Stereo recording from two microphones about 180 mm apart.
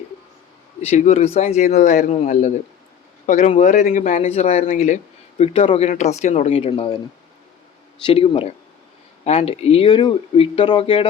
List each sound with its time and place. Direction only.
0.9 s speech: 40° left (ahead or behind)
8.0 s speech: 30° left (ahead or behind)